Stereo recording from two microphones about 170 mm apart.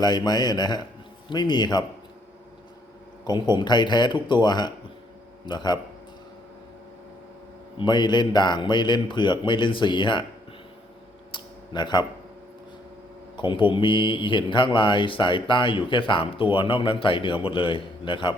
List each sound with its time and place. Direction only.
0.0 s speech: 25° left (ahead or behind)
3.2 s speech: 25° left (ahead or behind)
7.8 s speech: 25° left (ahead or behind)
11.3 s a sound: 25° left (ahead or behind)
13.3 s speech: 30° left (ahead or behind)